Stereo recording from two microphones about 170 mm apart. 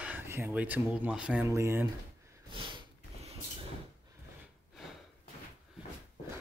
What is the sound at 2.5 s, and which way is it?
Sniff, 30° right (ahead or behind).